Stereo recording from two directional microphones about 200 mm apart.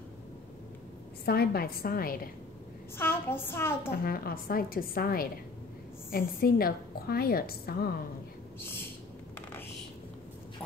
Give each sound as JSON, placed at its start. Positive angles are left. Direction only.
{"t": 1.2, "sound": "a woman's voice", "side_deg": 50}
{"t": 3.0, "sound": "a woman's voice", "side_deg": 10}
{"t": 4.0, "sound": "a woman's voice", "side_deg": 50}
{"t": 8.5, "sound": "a sound", "side_deg": 10}